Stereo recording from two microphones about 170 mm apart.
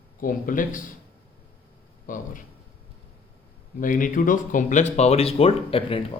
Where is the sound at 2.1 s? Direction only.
50° left (ahead or behind).